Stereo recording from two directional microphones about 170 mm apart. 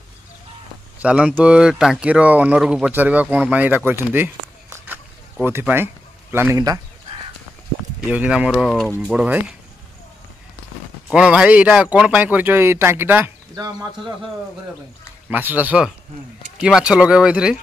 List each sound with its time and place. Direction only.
0.9 s speech: 5° right (ahead or behind)
8.0 s speech: 5° right (ahead or behind)
11.1 s speech: 5° right (ahead or behind)
15.2 s speech: 10° right (ahead or behind)